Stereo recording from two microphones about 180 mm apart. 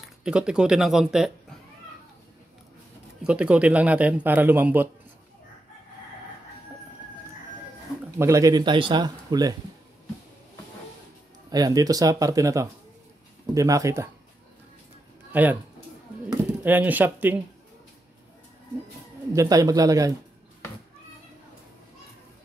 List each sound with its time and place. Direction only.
0.2 s speech: 5° right (ahead or behind)
3.3 s a man's voice: 5° right (ahead or behind)
8.2 s a man's voice: 20° right (ahead or behind)
11.5 s a man's voice: 20° right (ahead or behind)
15.3 s a man's voice: 10° right (ahead or behind)
19.3 s a man's voice: 20° right (ahead or behind)